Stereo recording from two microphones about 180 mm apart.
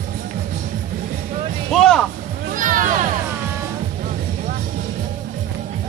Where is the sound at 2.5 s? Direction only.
50° right (ahead or behind).